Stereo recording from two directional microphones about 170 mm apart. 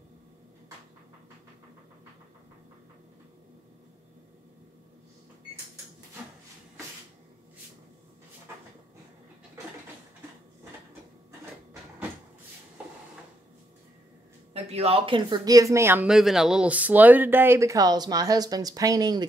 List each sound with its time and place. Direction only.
14.5 s speech: 35° right (ahead or behind)